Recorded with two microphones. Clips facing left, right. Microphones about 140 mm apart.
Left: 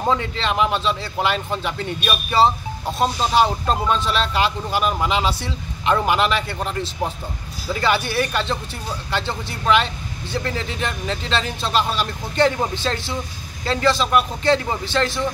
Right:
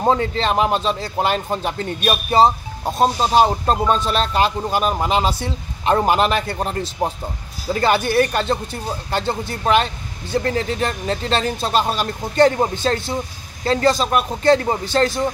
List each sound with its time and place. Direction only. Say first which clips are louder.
0.0 s speech: right 4 dB; 40° right (ahead or behind)